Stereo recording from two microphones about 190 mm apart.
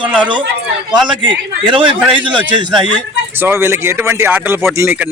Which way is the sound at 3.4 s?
10° right (ahead or behind).